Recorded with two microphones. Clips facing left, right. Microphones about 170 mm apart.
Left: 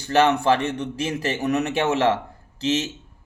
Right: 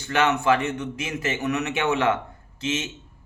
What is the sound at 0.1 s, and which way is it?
A man's voice, 35° left (ahead or behind).